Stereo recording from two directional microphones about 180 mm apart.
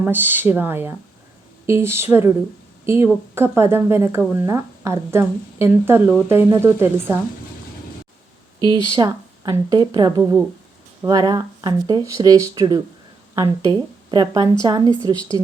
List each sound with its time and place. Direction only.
0.0 s speech: 10° right (ahead or behind)
8.7 s speech: 25° left (ahead or behind)
9.0 s speech: 20° right (ahead or behind)